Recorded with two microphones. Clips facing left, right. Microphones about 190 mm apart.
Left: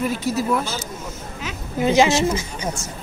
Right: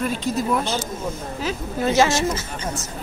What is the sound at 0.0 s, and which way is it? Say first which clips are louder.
Speech: left 1 dB; 10° left (ahead or behind).